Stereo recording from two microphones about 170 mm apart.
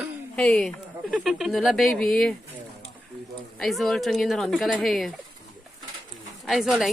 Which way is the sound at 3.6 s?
Centre (ahead or behind).